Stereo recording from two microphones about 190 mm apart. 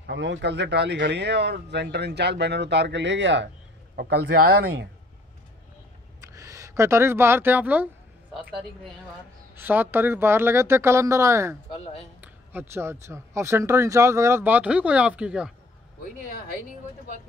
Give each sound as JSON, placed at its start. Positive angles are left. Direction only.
{"t": 0.0, "sound": "speech", "side_deg": -70}
{"t": 3.9, "sound": "speech", "side_deg": -55}
{"t": 6.2, "sound": "a sound", "side_deg": -15}
{"t": 9.6, "sound": "speech", "side_deg": -10}
{"t": 11.7, "sound": "speech", "side_deg": 30}
{"t": 12.2, "sound": "speech", "side_deg": -10}
{"t": 16.0, "sound": "speech", "side_deg": 50}